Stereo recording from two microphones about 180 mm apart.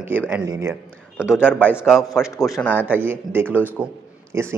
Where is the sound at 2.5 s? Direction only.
10° left (ahead or behind).